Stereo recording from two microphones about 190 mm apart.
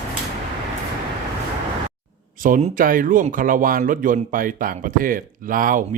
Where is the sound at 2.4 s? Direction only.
45° right (ahead or behind).